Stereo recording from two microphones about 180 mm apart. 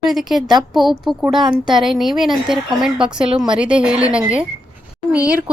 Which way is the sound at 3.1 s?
25° right (ahead or behind).